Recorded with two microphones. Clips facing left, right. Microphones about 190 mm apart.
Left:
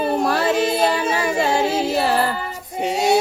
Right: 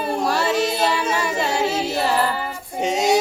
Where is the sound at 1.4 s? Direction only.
55° left (ahead or behind).